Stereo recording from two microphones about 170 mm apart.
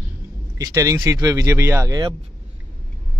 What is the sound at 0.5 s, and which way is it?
Speech, 20° right (ahead or behind).